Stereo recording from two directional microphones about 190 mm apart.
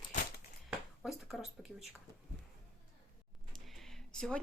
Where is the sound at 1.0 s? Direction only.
Centre (ahead or behind).